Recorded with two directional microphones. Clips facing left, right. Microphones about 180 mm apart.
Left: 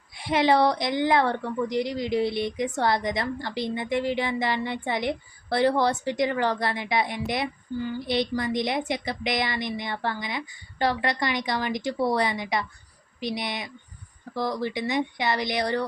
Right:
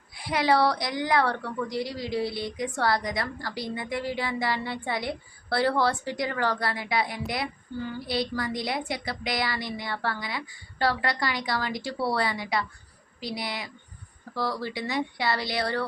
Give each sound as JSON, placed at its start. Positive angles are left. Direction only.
{"t": 0.2, "sound": "a woman's voice", "side_deg": 25}